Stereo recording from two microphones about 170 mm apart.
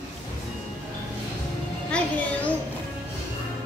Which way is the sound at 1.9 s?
5° left (ahead or behind).